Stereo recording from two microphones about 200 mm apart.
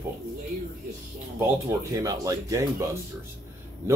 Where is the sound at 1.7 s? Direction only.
15° right (ahead or behind).